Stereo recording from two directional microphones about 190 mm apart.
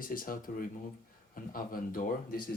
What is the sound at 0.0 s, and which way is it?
Speech, 50° left (ahead or behind).